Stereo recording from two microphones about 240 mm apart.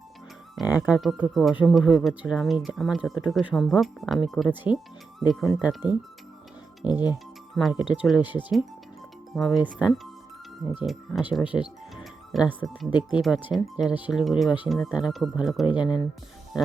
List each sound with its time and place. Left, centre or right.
0.8 s speech: centre
6.8 s speech: centre
7.5 s speech: centre
11.5 s speech: centre
12.3 s speech: centre
12.9 s speech: centre
13.2 s speech: centre
15.6 s speech: centre